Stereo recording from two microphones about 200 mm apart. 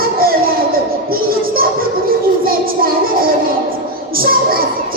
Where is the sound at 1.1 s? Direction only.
45° right (ahead or behind).